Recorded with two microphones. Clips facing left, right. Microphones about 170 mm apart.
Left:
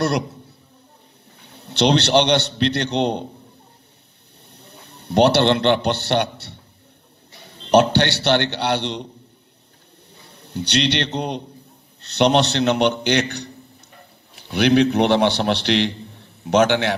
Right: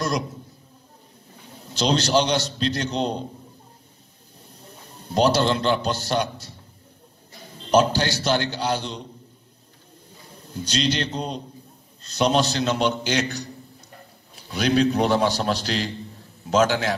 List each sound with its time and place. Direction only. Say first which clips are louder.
1.5 s a man's voice: left 5 dB; 70° left (ahead or behind)
4.5 s a man's voice: left 1 dB; 70° left (ahead or behind)
7.5 s a man's voice: left 4 dB; 70° left (ahead or behind)
10.3 s a man's voice: left 5 dB; 70° left (ahead or behind)